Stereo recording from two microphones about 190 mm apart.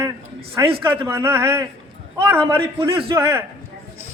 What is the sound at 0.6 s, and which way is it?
A man's voice, 20° right (ahead or behind).